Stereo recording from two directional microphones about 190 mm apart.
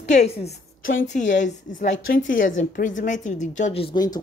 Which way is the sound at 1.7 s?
45° left (ahead or behind).